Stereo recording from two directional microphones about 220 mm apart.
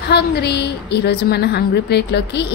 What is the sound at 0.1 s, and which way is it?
A woman's voice, 50° left (ahead or behind).